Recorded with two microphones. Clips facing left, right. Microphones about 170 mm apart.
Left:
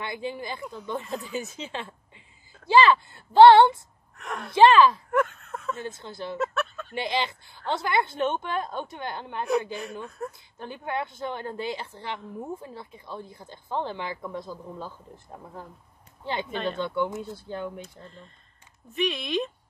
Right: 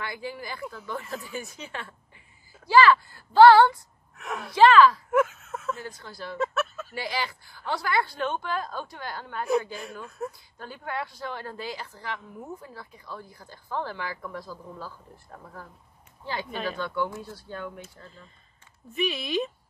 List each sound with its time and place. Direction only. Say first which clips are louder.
0.0 s a woman's voice: left 3 dB; 20° left (ahead or behind)
4.2 s speech: even; centre (ahead or behind)
4.6 s a woman's voice: even; 25° left (ahead or behind)
5.1 s a sound: right 2 dB; 5° right (ahead or behind)
5.8 s a woman's voice: left 4 dB; 25° left (ahead or behind)
6.3 s a sound: right 1 dB; centre (ahead or behind)
6.9 s a woman's voice: left 3 dB; 25° left (ahead or behind)
10.0 s speech: right 1 dB; centre (ahead or behind)
10.6 s a woman's voice: left 3 dB; 20° left (ahead or behind)
16.7 s a woman's voice: left 2 dB; 20° left (ahead or behind)
18.0 s speech: left 2 dB; centre (ahead or behind)